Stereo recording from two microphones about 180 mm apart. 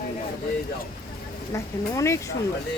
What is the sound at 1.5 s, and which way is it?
Speech, 15° left (ahead or behind).